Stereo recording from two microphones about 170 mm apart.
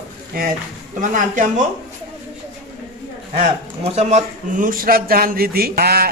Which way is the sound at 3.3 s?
40° right (ahead or behind).